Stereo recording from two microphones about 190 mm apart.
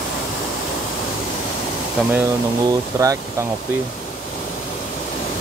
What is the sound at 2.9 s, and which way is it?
Speech, 20° right (ahead or behind).